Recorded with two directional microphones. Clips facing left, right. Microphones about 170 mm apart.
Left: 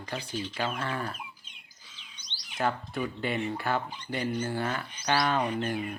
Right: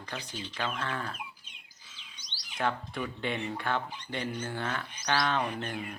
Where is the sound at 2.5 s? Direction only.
5° left (ahead or behind).